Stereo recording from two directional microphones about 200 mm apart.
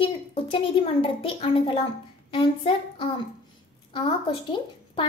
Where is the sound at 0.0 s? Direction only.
25° left (ahead or behind).